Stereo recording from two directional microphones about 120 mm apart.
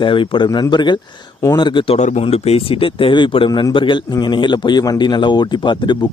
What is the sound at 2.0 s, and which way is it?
A man's voice, 70° left (ahead or behind).